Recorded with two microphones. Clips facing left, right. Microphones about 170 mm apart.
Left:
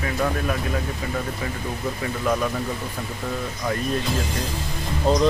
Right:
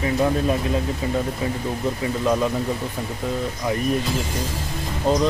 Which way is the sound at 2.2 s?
20° right (ahead or behind).